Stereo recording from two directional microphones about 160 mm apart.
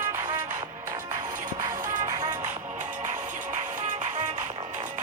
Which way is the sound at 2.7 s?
50° right (ahead or behind).